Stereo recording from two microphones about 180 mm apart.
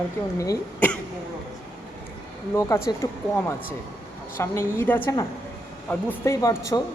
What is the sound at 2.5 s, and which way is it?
A woman's voice, 15° left (ahead or behind).